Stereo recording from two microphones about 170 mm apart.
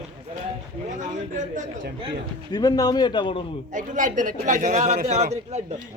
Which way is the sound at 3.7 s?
50° right (ahead or behind).